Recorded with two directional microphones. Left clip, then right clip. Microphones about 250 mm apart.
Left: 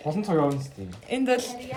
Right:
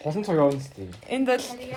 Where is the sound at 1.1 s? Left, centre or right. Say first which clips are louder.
Even; centre.